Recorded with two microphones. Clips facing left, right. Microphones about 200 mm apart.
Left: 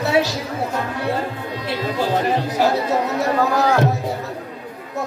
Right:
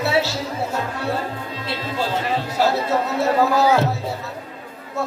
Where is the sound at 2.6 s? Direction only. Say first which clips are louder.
Right 1 dB; 15° left (ahead or behind).